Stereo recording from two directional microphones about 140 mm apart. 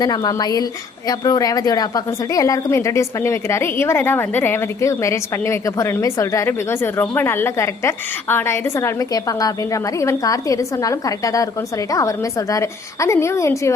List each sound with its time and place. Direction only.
0.0 s a woman's voice: 30° left (ahead or behind)